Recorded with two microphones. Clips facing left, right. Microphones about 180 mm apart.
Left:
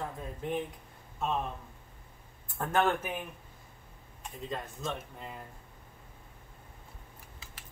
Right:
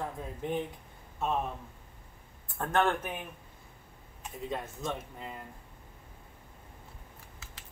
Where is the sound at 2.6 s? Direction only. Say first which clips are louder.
Even; 5° left (ahead or behind).